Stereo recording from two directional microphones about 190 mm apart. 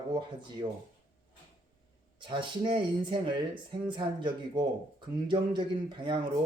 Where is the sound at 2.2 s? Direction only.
25° right (ahead or behind).